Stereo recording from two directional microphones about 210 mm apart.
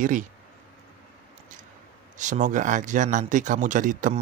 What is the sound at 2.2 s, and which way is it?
Speech, 35° right (ahead or behind).